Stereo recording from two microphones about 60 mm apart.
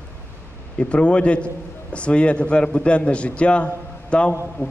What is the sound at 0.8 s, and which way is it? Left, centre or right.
A man's voice, centre.